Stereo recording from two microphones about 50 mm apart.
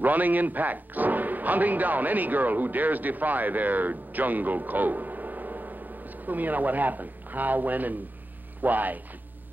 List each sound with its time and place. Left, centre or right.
0.0 s speech: right